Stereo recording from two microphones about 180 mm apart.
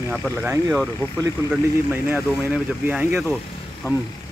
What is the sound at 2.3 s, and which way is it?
Speech, 5° right (ahead or behind).